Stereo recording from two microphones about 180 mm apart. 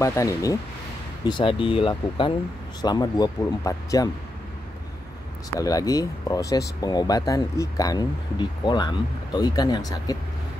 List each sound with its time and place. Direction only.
0.0 s speech: 15° left (ahead or behind)
5.6 s speech: 20° left (ahead or behind)